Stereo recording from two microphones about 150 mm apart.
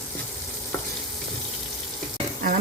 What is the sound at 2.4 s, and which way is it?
Speech, 70° right (ahead or behind).